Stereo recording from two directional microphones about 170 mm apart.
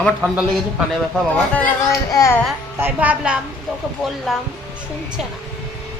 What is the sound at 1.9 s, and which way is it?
Speech, 20° left (ahead or behind).